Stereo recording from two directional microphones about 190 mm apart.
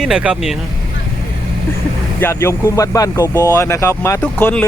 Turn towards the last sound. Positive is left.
turn(degrees=10)  # may be behind; listen again after turning